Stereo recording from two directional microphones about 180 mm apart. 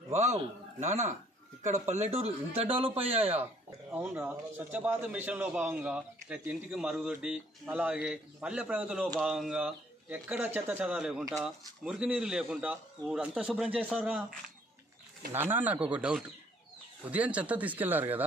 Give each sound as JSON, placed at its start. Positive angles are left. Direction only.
{"t": 0.1, "sound": "speech", "side_deg": -40}
{"t": 3.9, "sound": "a man's voice", "side_deg": -10}
{"t": 15.3, "sound": "a man's voice", "side_deg": -10}